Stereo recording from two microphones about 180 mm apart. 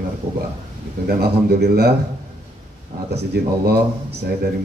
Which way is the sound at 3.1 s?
65° right (ahead or behind).